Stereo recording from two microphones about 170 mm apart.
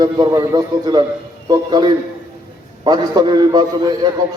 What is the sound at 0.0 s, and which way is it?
Speech, 20° right (ahead or behind).